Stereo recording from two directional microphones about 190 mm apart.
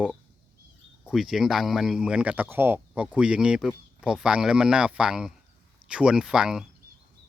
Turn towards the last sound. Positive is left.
turn(degrees=-5)  # may be behind; listen again after turning